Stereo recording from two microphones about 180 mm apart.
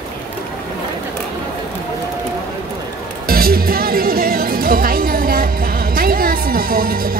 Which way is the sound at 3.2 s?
55° right (ahead or behind).